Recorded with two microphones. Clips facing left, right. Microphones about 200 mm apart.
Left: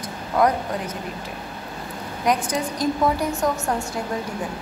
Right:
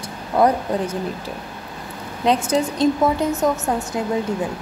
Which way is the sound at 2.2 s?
25° right (ahead or behind).